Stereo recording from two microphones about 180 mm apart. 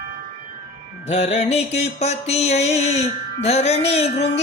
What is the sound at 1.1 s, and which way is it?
Music, 35° left (ahead or behind).